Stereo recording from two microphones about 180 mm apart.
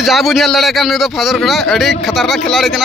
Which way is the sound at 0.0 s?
Centre (ahead or behind).